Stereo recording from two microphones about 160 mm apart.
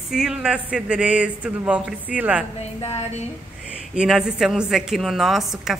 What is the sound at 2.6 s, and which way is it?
Speech, 45° left (ahead or behind).